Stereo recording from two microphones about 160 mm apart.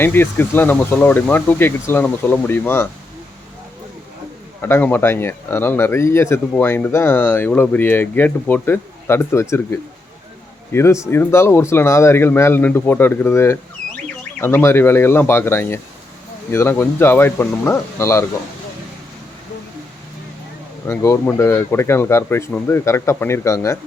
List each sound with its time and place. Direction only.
0.0 s speech: 15° left (ahead or behind)
4.6 s a man's voice: 15° left (ahead or behind)
20.8 s speech: 15° left (ahead or behind)